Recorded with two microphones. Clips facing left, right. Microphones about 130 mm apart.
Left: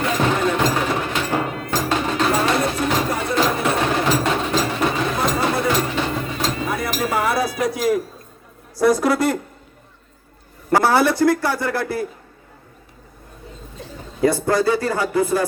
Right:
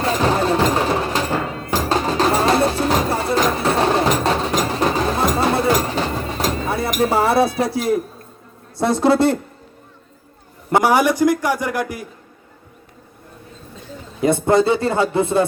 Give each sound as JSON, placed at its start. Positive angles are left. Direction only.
{"t": 0.0, "sound": "music", "side_deg": -35}
{"t": 4.2, "sound": "a sound", "side_deg": -35}
{"t": 4.7, "sound": "music", "side_deg": -35}
{"t": 7.0, "sound": "a sound", "side_deg": -30}
{"t": 8.8, "sound": "a man's voice", "side_deg": -25}
{"t": 10.7, "sound": "a man's voice", "side_deg": -20}
{"t": 14.2, "sound": "a man's voice", "side_deg": -20}